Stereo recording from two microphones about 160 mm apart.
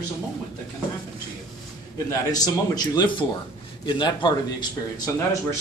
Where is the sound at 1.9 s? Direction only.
20° left (ahead or behind).